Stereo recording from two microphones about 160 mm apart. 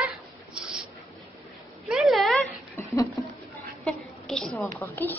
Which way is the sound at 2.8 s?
15° left (ahead or behind).